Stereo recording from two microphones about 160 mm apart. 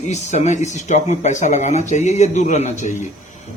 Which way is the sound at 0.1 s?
45° left (ahead or behind).